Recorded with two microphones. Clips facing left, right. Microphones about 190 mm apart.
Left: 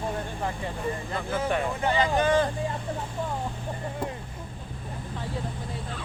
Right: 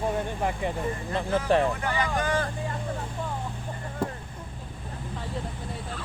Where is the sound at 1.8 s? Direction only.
25° left (ahead or behind).